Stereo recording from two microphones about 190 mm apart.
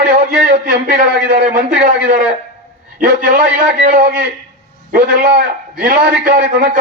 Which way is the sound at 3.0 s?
45° right (ahead or behind).